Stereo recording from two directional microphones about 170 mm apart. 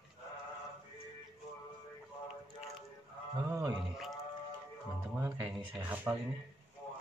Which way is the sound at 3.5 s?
20° right (ahead or behind).